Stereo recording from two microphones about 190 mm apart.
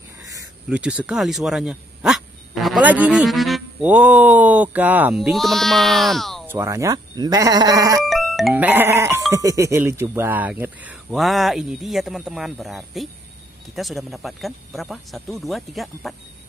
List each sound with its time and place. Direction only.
0.7 s speech: 5° right (ahead or behind)
6.4 s speech: 10° right (ahead or behind)
8.0 s speech: centre (ahead or behind)